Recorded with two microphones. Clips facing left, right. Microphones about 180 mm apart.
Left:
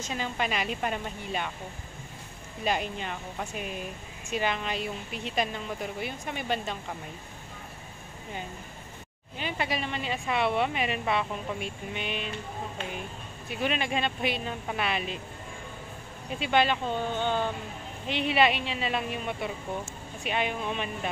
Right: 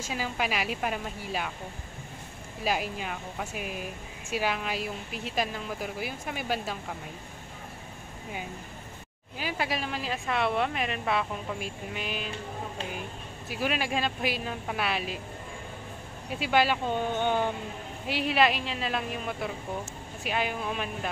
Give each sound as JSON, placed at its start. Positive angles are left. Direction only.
{"t": 0.0, "sound": "speech", "side_deg": -5}
{"t": 2.6, "sound": "speech", "side_deg": -5}
{"t": 9.4, "sound": "speech", "side_deg": -5}
{"t": 13.5, "sound": "speech", "side_deg": -5}
{"t": 16.3, "sound": "speech", "side_deg": -5}
{"t": 17.1, "sound": "a sound", "side_deg": -15}
{"t": 18.0, "sound": "speech", "side_deg": -5}